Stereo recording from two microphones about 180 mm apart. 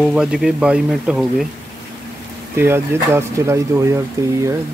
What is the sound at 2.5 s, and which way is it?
Speech, 15° right (ahead or behind).